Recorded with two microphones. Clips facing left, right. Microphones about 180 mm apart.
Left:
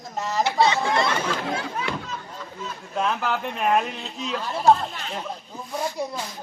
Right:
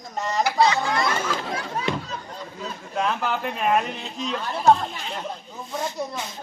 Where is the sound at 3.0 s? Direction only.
Centre (ahead or behind).